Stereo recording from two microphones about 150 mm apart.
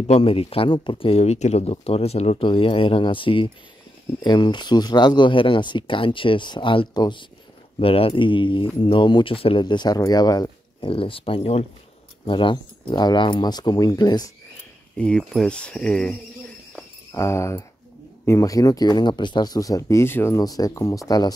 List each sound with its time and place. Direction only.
0.0 s speech: 40° left (ahead or behind); by 14.3 s 25° left (ahead or behind)
15.0 s speech: 5° left (ahead or behind)
17.1 s speech: 20° left (ahead or behind)